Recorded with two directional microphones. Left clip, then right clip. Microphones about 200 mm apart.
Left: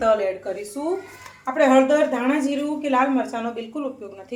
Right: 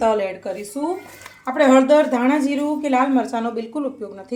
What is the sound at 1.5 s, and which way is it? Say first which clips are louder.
A woman's voice: right 3 dB; 50° right (ahead or behind).